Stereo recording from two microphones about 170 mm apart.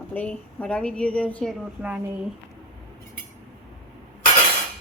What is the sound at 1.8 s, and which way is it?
Speech, 10° right (ahead or behind).